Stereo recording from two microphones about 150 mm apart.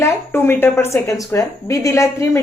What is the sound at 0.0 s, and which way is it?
A woman's voice, 15° left (ahead or behind).